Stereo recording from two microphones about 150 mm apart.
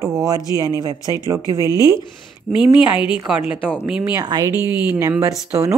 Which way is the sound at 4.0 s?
25° right (ahead or behind).